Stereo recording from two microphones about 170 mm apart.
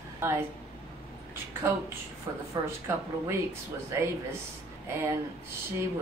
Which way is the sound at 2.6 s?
25° right (ahead or behind).